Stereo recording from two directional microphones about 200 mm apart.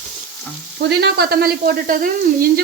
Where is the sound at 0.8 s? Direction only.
55° right (ahead or behind).